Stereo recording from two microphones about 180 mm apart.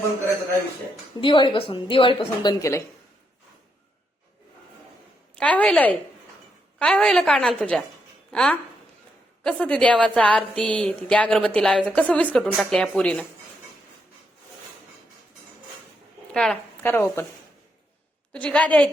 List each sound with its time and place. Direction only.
1.2 s a woman's voice: 25° left (ahead or behind)
5.4 s a woman's voice: 5° left (ahead or behind)
16.3 s a woman's voice: 5° left (ahead or behind)
18.3 s a woman's voice: 5° left (ahead or behind)